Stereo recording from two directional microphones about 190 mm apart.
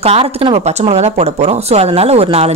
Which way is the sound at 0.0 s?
30° right (ahead or behind).